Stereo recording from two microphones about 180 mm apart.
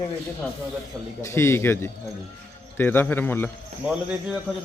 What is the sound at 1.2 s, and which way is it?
Speech, 15° left (ahead or behind).